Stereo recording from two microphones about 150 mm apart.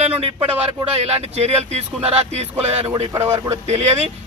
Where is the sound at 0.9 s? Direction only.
45° right (ahead or behind).